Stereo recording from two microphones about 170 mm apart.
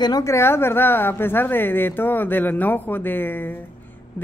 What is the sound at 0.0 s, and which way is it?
A woman's voice, 20° left (ahead or behind).